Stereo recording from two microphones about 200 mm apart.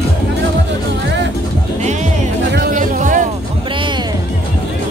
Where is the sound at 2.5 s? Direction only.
45° right (ahead or behind).